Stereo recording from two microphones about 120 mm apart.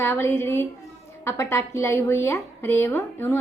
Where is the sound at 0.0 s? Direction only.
20° left (ahead or behind).